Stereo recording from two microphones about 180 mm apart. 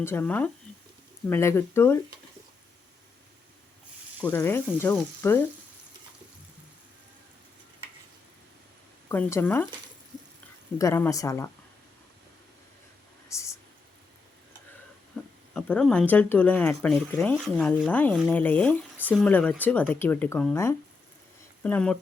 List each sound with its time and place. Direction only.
0.0 s speech: 10° left (ahead or behind)
4.3 s speech: 10° left (ahead or behind)
9.0 s speech: 10° left (ahead or behind)
10.8 s speech: 15° left (ahead or behind)
13.2 s a sound: 15° left (ahead or behind)
15.1 s a sound: centre (ahead or behind)
15.5 s speech: 5° left (ahead or behind)